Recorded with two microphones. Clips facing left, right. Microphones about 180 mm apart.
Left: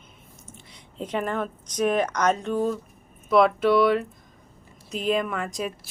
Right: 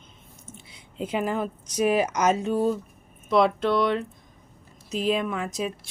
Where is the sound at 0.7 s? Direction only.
5° right (ahead or behind).